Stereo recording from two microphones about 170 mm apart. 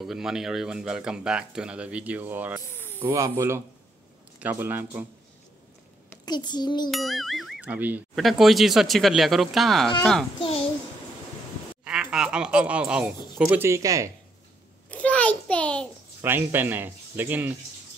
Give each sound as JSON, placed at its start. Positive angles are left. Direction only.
{"t": 0.0, "sound": "speech", "side_deg": -5}
{"t": 2.7, "sound": "snake", "side_deg": 15}
{"t": 3.1, "sound": "speech", "side_deg": -20}
{"t": 6.2, "sound": "a child's voice", "side_deg": 25}
{"t": 6.9, "sound": "speech", "side_deg": 0}
{"t": 11.8, "sound": "speech", "side_deg": -5}
{"t": 14.9, "sound": "a sound", "side_deg": 10}
{"t": 16.2, "sound": "speech", "side_deg": -10}